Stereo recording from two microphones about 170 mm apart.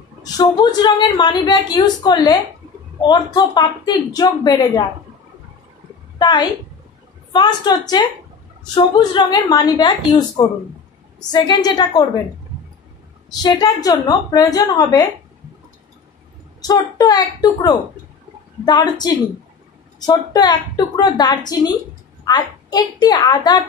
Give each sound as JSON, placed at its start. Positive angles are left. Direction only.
{"t": 0.2, "sound": "a woman's voice", "side_deg": 25}
{"t": 6.1, "sound": "a woman's voice", "side_deg": 25}
{"t": 13.4, "sound": "a woman's voice", "side_deg": 25}
{"t": 16.6, "sound": "a woman's voice", "side_deg": 20}